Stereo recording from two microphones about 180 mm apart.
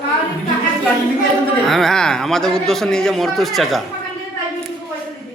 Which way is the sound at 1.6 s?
Centre (ahead or behind).